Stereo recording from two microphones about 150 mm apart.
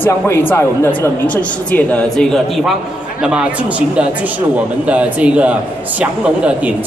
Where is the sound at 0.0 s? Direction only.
15° left (ahead or behind).